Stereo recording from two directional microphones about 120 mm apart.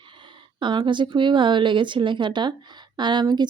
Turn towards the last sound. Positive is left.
turn(degrees=-40)  # may be behind; listen again after turning